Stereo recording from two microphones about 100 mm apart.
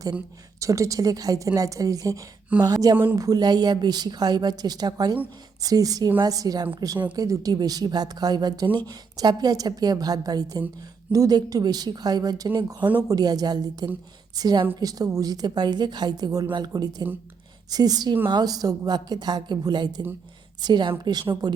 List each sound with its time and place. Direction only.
0.6 s a woman's voice: 35° right (ahead or behind)